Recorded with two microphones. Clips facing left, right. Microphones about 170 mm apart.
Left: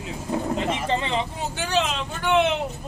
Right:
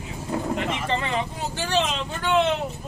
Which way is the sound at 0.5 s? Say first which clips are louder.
Left 2 dB; 25° left (ahead or behind).